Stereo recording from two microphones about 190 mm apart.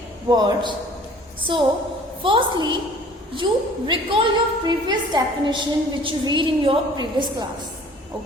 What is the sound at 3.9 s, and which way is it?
A woman's voice, 25° right (ahead or behind).